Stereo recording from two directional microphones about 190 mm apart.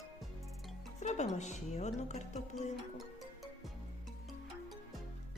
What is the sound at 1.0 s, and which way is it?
A woman's voice, 40° left (ahead or behind).